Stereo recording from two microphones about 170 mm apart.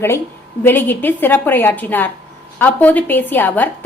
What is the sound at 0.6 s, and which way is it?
A woman's voice, 10° left (ahead or behind).